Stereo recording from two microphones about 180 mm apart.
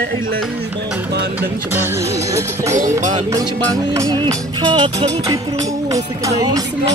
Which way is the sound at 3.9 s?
20° right (ahead or behind).